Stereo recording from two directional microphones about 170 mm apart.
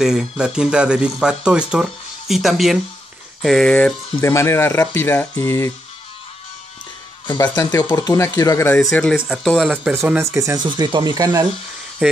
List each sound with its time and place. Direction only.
0.0 s speech: 5° right (ahead or behind); by 5.7 s 15° left (ahead or behind)
7.5 s speech: 20° left (ahead or behind)
9.3 s speech: centre (ahead or behind)
9.9 s speech: 15° right (ahead or behind)
12.0 s speech: 5° right (ahead or behind)